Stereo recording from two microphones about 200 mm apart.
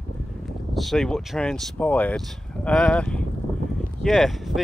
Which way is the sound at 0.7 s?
Centre (ahead or behind).